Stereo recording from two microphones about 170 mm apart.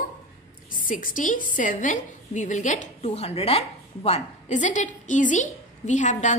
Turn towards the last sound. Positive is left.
turn(degrees=45)  # may be behind; listen again after turning